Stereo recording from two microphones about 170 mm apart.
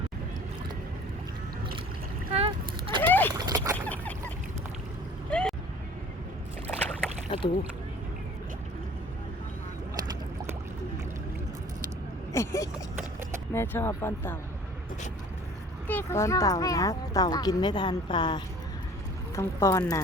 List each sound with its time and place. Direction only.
2.3 s boat: 35° right (ahead or behind)
3.0 s a sound: 10° left (ahead or behind)
3.3 s a sound: 20° right (ahead or behind)
3.8 s a sound: 10° left (ahead or behind)
5.3 s vehicle: 5° left (ahead or behind)
7.3 s rowboat: 30° left (ahead or behind)
12.3 s vehicle: 15° left (ahead or behind)
13.5 s speech: 15° left (ahead or behind)
15.9 s speech: 15° left (ahead or behind)